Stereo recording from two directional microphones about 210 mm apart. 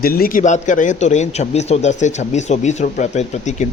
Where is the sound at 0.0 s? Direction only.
45° left (ahead or behind).